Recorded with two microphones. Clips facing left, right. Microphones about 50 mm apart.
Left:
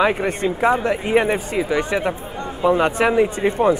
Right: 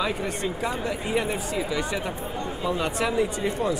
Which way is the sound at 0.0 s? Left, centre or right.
Left.